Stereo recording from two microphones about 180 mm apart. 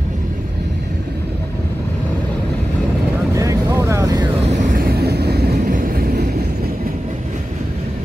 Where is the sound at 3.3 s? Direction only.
20° right (ahead or behind).